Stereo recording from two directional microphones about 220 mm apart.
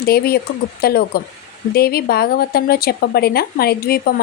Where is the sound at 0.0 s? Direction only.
45° left (ahead or behind).